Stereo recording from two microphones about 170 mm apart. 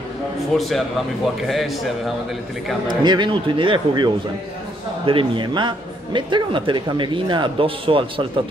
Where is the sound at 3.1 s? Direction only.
30° right (ahead or behind).